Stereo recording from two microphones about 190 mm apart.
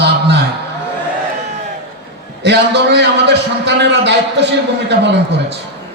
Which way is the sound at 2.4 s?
60° right (ahead or behind).